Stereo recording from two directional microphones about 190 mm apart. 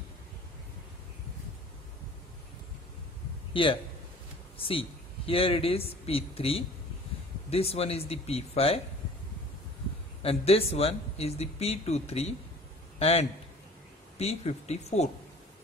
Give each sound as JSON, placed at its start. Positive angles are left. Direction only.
{"t": 4.6, "sound": "speech", "side_deg": 30}
{"t": 10.2, "sound": "speech", "side_deg": 30}